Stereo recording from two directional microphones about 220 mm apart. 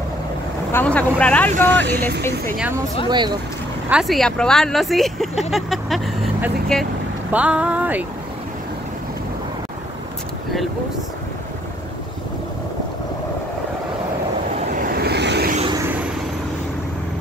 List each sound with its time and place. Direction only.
0.7 s speech: 10° left (ahead or behind)
3.1 s speech: 20° right (ahead or behind)
3.9 s speech: centre (ahead or behind)
14.8 s vehicle: 45° right (ahead or behind)